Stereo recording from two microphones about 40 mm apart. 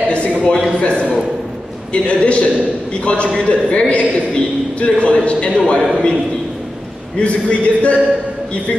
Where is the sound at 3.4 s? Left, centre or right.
Left.